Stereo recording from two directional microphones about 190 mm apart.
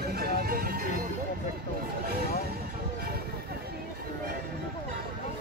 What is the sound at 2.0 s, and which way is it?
Vehicle, 55° right (ahead or behind).